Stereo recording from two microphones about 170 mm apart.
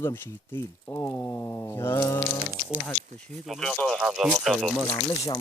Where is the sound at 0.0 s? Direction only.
15° left (ahead or behind).